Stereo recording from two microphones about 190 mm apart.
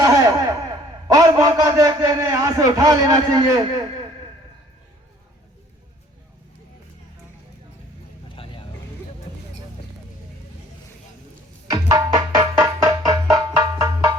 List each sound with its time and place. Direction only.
0.0 s a man's voice: 20° right (ahead or behind)
11.7 s music: 15° right (ahead or behind)